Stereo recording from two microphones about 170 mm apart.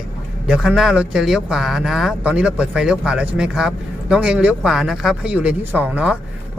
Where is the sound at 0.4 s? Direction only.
5° right (ahead or behind).